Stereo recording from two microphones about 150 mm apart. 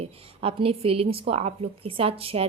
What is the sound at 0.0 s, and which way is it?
A woman's voice, 40° right (ahead or behind).